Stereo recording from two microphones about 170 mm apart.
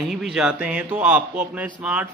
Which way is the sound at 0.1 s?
Centre (ahead or behind).